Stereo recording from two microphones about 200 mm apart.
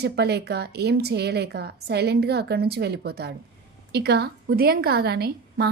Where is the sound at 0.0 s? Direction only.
55° right (ahead or behind).